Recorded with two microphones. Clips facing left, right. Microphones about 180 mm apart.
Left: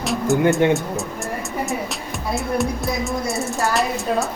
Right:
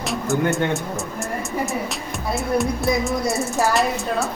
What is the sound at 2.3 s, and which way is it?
Music, centre (ahead or behind).